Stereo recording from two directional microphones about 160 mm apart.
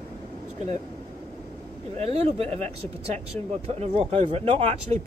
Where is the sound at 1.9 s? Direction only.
40° right (ahead or behind).